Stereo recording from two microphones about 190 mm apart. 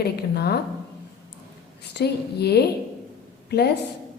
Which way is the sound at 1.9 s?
60° left (ahead or behind).